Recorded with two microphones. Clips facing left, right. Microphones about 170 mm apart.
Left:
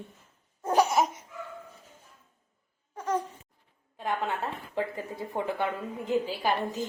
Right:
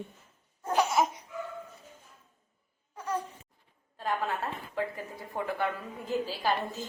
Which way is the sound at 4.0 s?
20° left (ahead or behind).